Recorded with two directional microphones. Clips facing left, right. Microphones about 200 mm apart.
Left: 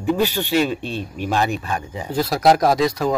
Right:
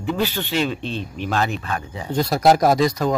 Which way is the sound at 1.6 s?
15° left (ahead or behind).